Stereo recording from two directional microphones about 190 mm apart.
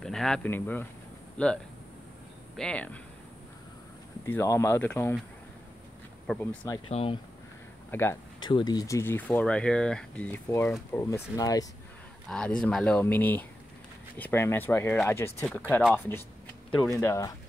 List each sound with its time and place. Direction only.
0.0 s speech: 5° left (ahead or behind)
4.3 s speech: 15° left (ahead or behind)
6.2 s speech: 10° left (ahead or behind)
6.9 s speech: 30° left (ahead or behind)
7.9 s speech: 15° left (ahead or behind)
8.4 s speech: 25° left (ahead or behind)
12.3 s speech: 5° left (ahead or behind)